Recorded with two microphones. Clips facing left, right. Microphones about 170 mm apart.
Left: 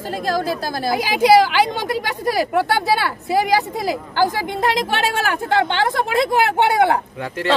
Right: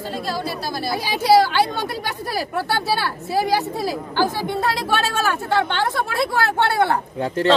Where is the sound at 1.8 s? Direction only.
15° left (ahead or behind).